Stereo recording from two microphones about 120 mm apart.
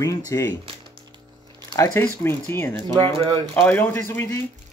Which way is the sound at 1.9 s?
15° left (ahead or behind).